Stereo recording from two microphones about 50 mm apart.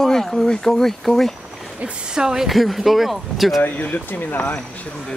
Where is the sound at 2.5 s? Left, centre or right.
Centre.